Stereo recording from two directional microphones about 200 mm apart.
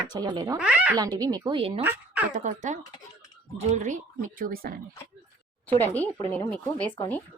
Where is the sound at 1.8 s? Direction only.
10° right (ahead or behind).